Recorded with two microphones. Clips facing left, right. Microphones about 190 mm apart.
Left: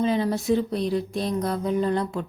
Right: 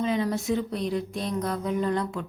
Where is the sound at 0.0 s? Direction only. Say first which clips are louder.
Left 3 dB; 30° left (ahead or behind).